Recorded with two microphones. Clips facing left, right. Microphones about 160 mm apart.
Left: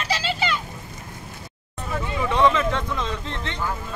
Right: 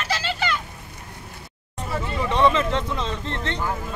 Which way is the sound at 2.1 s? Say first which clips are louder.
Left 1 dB; 5° left (ahead or behind).